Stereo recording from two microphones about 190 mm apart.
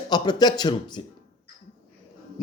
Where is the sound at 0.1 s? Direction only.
20° left (ahead or behind).